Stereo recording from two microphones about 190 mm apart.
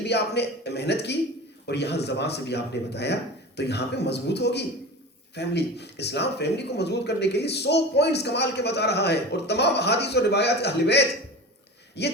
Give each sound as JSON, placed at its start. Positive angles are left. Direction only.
{"t": 0.0, "sound": "speech", "side_deg": 60}